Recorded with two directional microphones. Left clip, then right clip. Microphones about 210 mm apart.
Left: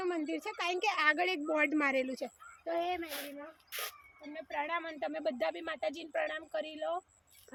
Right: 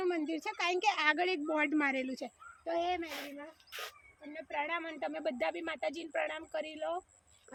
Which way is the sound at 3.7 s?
25° left (ahead or behind).